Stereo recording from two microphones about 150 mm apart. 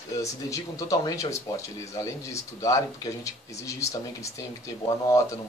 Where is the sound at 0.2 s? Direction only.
20° left (ahead or behind).